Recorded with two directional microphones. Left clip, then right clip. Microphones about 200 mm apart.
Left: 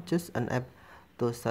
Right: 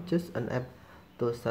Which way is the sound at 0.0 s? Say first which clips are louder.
Even; 25° left (ahead or behind).